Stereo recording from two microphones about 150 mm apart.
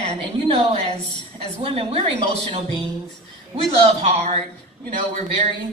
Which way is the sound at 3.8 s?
45° right (ahead or behind).